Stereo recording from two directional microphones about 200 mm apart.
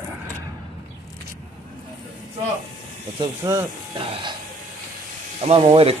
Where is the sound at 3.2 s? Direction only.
15° right (ahead or behind).